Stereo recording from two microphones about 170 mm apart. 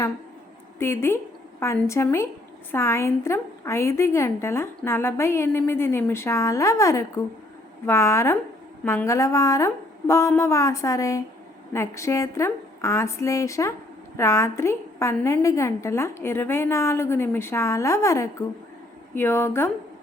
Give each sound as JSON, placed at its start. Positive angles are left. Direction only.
{"t": 0.8, "sound": "a woman's voice", "side_deg": 15}